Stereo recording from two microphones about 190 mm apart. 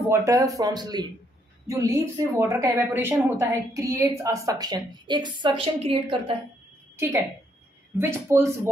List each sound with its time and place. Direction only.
0.1 s a woman's voice: 15° right (ahead or behind)
8.0 s a woman's voice: 15° right (ahead or behind)